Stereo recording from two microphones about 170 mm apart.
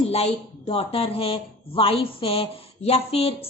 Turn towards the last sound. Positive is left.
turn(degrees=35)  # may be behind; listen again after turning